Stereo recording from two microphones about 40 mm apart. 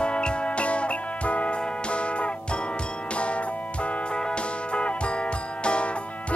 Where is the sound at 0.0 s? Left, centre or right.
Left.